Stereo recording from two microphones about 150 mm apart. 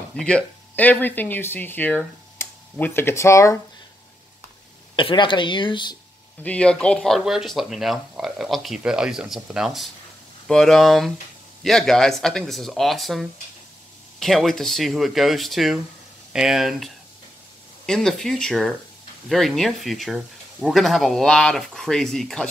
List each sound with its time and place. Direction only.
0.1 s speech: 5° left (ahead or behind)
4.9 s speech: 35° left (ahead or behind)
6.4 s speech: 10° left (ahead or behind)